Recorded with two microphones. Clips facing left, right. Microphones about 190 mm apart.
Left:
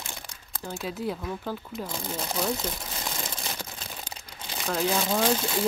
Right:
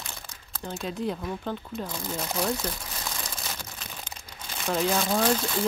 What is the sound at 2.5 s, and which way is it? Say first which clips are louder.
Crumpling: even; 25° left (ahead or behind).